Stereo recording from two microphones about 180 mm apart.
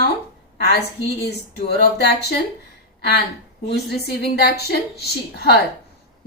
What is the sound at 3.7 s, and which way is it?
A woman's voice, 65° left (ahead or behind).